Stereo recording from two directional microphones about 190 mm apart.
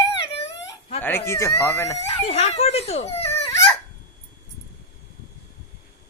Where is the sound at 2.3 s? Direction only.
30° left (ahead or behind).